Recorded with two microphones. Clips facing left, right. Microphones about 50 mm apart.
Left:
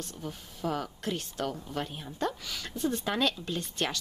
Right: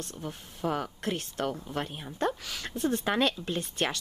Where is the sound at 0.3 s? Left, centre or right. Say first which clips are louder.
Right 2 dB; centre.